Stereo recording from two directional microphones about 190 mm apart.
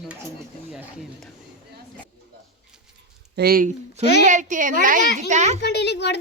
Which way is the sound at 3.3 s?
50° right (ahead or behind).